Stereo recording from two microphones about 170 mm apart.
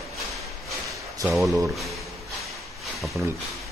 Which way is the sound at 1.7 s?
Centre (ahead or behind).